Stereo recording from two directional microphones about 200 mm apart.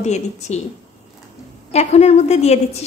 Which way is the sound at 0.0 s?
35° left (ahead or behind).